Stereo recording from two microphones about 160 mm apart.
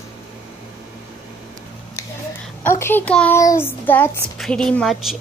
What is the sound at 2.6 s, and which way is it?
Child singing, 15° left (ahead or behind).